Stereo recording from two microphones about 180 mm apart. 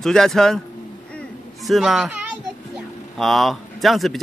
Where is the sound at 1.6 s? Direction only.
Centre (ahead or behind).